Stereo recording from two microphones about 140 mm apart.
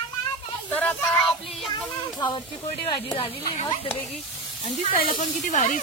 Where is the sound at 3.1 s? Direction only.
45° left (ahead or behind).